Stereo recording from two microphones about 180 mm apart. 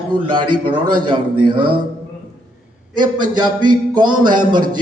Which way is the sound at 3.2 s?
25° right (ahead or behind).